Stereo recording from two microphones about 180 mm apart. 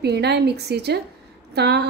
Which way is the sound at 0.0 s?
65° right (ahead or behind).